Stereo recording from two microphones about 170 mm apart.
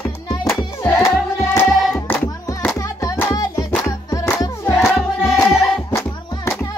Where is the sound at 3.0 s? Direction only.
20° left (ahead or behind).